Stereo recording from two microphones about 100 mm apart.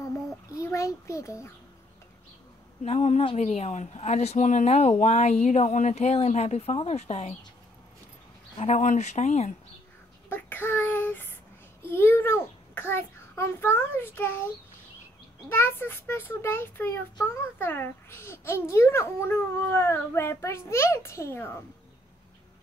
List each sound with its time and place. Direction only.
0.0 s a child's voice: 30° left (ahead or behind)
2.8 s a woman's voice: 90° left
9.2 s a woman's voice: 90° left
10.3 s child singing: 20° left (ahead or behind)
11.9 s a child's voice: 25° left (ahead or behind)
15.5 s a child's voice: 25° left (ahead or behind)